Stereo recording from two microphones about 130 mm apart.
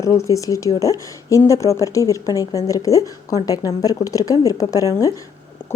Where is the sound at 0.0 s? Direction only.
25° left (ahead or behind).